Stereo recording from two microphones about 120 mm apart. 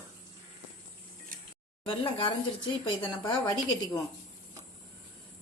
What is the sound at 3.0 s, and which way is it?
Speech, 15° left (ahead or behind).